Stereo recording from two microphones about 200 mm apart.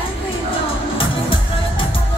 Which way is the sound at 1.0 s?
25° left (ahead or behind).